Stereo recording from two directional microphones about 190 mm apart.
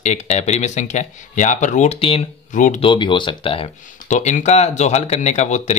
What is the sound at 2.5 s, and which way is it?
Speech, 45° left (ahead or behind).